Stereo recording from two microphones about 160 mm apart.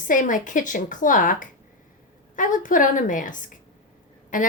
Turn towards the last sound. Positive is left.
turn(degrees=55)  # may be behind; listen again after turning